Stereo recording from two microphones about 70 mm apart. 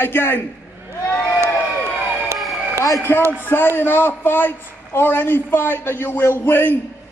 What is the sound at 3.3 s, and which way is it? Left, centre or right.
A man's voice, left.